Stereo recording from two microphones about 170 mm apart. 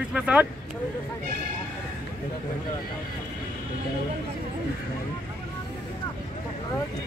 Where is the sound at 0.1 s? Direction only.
5° right (ahead or behind).